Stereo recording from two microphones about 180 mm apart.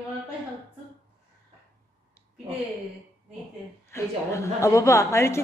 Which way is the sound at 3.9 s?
15° left (ahead or behind).